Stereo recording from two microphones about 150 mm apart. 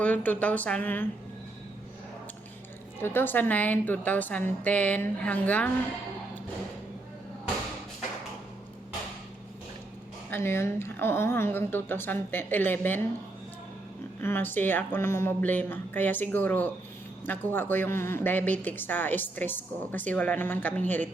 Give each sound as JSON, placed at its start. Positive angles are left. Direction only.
{"t": 0.0, "sound": "a woman's voice", "side_deg": 10}
{"t": 3.0, "sound": "a woman's voice", "side_deg": 15}
{"t": 10.3, "sound": "a woman's voice", "side_deg": 15}
{"t": 14.2, "sound": "a woman's voice", "side_deg": 15}